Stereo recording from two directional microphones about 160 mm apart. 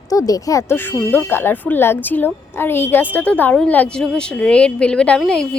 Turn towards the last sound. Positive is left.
turn(degrees=5)  # may be behind; listen again after turning